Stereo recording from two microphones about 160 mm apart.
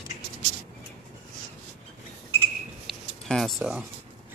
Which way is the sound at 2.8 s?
Centre (ahead or behind).